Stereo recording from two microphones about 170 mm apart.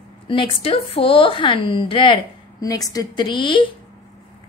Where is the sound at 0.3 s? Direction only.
30° left (ahead or behind).